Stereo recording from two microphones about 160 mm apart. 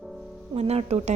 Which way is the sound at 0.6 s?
40° right (ahead or behind).